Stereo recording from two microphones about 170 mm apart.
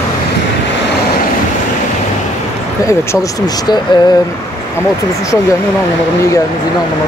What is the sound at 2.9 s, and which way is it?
Speech, 20° left (ahead or behind).